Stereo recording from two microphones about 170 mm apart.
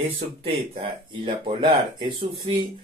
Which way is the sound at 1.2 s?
30° right (ahead or behind).